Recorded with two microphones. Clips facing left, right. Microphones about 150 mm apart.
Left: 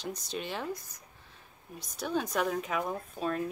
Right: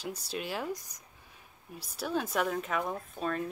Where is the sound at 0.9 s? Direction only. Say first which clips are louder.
Left 1 dB; 15° right (ahead or behind).